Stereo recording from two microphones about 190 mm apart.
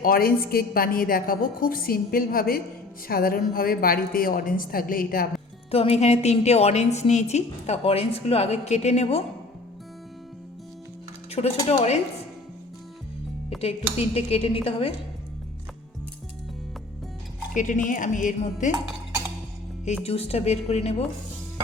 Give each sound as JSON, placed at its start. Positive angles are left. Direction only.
{"t": 0.0, "sound": "a woman's voice", "side_deg": 50}
{"t": 5.7, "sound": "a woman's voice", "side_deg": 30}
{"t": 11.3, "sound": "speech", "side_deg": 30}
{"t": 13.6, "sound": "a woman's voice", "side_deg": 30}
{"t": 17.5, "sound": "a woman's voice", "side_deg": 40}
{"t": 20.1, "sound": "a woman's voice", "side_deg": 30}